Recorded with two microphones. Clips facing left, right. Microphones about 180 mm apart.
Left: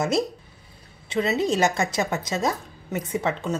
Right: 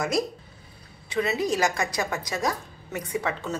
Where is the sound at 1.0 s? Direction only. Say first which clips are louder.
Left 3 dB; 25° left (ahead or behind).